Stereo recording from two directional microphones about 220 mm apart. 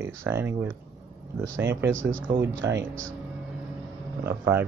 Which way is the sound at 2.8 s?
60° right (ahead or behind).